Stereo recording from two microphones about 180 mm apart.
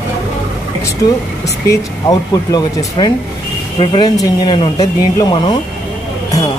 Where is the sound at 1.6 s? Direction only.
20° left (ahead or behind).